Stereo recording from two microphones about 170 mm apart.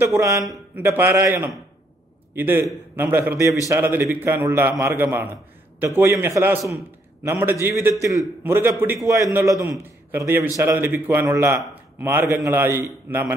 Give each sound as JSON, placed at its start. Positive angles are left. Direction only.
{"t": 0.0, "sound": "a man's voice", "side_deg": -15}